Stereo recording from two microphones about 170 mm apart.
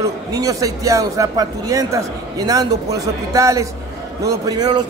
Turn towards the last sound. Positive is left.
turn(degrees=-25)  # may be behind; listen again after turning